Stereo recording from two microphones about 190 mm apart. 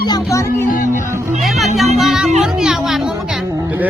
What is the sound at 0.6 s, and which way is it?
Music, 45° left (ahead or behind).